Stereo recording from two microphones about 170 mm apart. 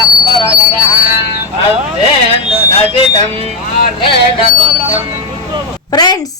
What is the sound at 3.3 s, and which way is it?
Speech, 35° right (ahead or behind).